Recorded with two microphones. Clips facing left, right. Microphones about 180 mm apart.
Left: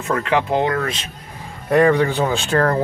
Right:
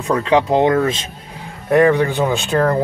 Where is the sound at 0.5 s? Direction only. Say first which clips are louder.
Right 5 dB; 25° right (ahead or behind).